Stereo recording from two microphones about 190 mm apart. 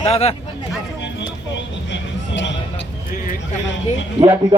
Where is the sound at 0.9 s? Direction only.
70° left (ahead or behind).